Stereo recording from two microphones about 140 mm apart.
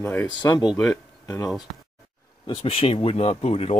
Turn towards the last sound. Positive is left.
turn(degrees=50)  # may be behind; listen again after turning